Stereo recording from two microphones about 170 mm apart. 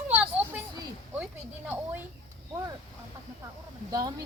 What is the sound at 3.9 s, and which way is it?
Speech, 25° right (ahead or behind).